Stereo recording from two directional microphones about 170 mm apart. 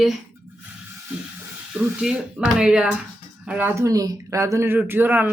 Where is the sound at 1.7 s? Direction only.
5° right (ahead or behind).